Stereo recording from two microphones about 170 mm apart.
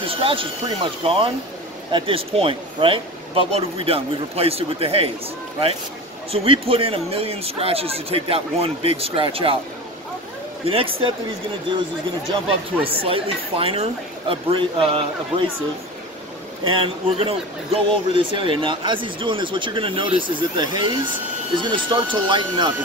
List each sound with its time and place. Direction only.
0.0 s speech: 30° right (ahead or behind)
6.3 s speech: 35° right (ahead or behind)
10.6 s speech: 35° right (ahead or behind)
12.4 s speech: 35° right (ahead or behind)
16.6 s speech: 35° right (ahead or behind)